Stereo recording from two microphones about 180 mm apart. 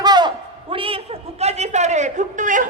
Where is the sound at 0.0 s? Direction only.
25° right (ahead or behind).